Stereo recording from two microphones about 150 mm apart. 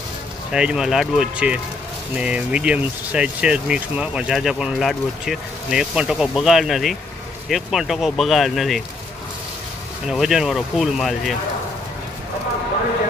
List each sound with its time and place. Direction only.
0.5 s speech: 5° right (ahead or behind)
10.0 s speech: 5° right (ahead or behind)